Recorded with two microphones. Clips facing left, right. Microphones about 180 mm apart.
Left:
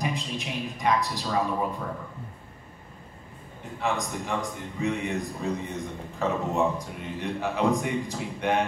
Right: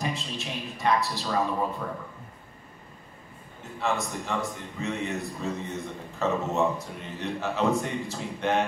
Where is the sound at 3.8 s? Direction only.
15° left (ahead or behind).